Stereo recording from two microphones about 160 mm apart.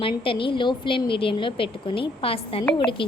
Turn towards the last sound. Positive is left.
turn(degrees=30)  # may be behind; listen again after turning